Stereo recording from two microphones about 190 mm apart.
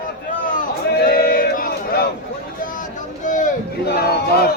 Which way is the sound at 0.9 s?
55° left (ahead or behind).